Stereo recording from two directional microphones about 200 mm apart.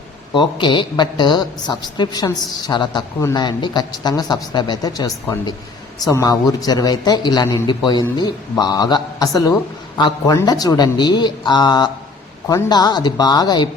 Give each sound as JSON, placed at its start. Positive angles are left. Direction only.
{"t": 0.3, "sound": "a woman's voice", "side_deg": 25}